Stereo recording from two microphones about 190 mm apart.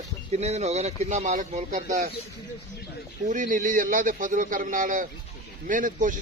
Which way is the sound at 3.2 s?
45° right (ahead or behind).